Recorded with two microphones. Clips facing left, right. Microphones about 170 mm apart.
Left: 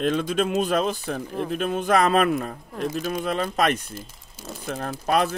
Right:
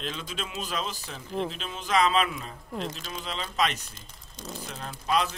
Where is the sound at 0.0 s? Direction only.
55° left (ahead or behind).